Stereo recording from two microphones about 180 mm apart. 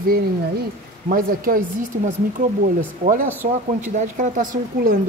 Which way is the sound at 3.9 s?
45° right (ahead or behind).